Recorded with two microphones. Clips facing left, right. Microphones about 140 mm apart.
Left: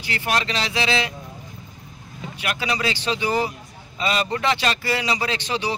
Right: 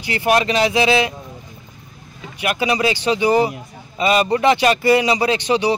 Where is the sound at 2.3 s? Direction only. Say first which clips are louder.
Right 7 dB; 15° right (ahead or behind).